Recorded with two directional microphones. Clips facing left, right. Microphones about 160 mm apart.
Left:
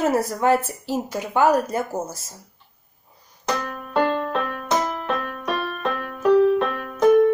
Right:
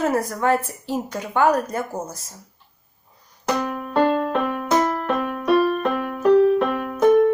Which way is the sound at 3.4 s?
15° right (ahead or behind).